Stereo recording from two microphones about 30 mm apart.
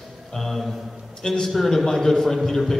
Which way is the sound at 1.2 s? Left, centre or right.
Centre.